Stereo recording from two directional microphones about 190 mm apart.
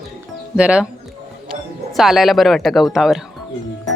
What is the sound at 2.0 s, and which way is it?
Speech, centre (ahead or behind).